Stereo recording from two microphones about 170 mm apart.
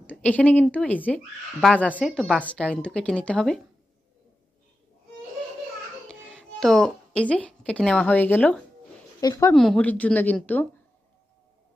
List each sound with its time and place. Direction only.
0.0 s a woman's voice: 10° left (ahead or behind)
6.0 s speech: 5° left (ahead or behind)
9.2 s speech: 25° left (ahead or behind)
9.5 s a woman's voice: 5° left (ahead or behind)